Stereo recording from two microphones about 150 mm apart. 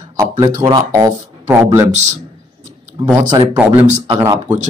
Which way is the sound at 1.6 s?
15° right (ahead or behind).